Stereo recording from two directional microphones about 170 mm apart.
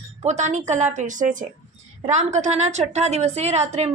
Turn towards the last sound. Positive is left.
turn(degrees=-40)  # may be behind; listen again after turning